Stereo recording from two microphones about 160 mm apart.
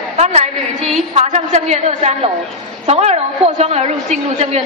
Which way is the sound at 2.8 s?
40° right (ahead or behind).